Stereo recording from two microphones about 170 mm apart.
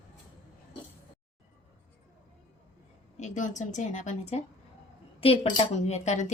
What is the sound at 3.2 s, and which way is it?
A woman's voice, 45° left (ahead or behind).